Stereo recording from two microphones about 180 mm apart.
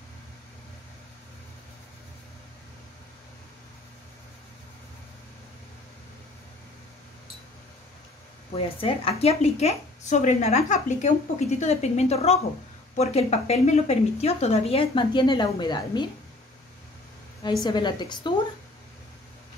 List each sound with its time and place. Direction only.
8.5 s a woman's voice: 35° left (ahead or behind)
17.6 s a woman's voice: 25° left (ahead or behind)